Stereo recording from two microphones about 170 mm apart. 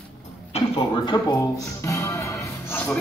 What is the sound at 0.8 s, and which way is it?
A man's voice, 25° left (ahead or behind).